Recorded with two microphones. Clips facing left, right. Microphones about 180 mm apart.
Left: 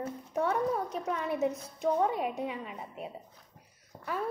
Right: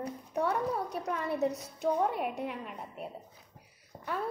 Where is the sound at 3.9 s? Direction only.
30° right (ahead or behind).